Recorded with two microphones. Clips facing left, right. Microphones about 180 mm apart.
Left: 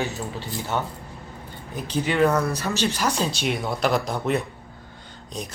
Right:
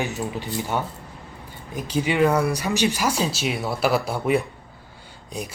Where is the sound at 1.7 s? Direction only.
10° right (ahead or behind).